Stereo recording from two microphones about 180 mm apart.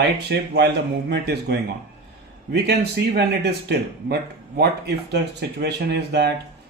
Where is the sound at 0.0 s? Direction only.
65° right (ahead or behind).